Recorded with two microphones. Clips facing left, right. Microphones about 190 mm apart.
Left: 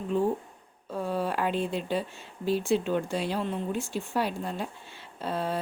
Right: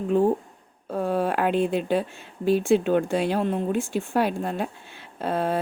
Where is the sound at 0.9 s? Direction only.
55° right (ahead or behind).